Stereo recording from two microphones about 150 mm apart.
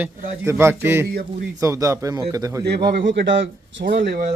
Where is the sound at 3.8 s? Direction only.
85° right.